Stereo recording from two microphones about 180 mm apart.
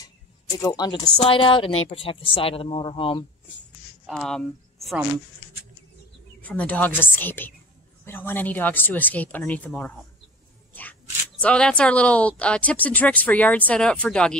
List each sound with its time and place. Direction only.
0.6 s a woman's voice: 20° left (ahead or behind)
4.0 s speech: centre (ahead or behind)
6.4 s speech: 10° left (ahead or behind)
10.7 s a sound: 10° left (ahead or behind)
11.4 s speech: 5° left (ahead or behind)